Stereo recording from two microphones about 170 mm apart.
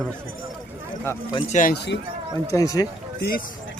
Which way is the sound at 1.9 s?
70° left (ahead or behind).